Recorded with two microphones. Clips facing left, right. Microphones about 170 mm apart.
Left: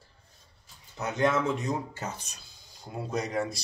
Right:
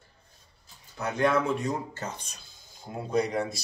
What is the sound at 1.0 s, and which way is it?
Speech, 20° left (ahead or behind).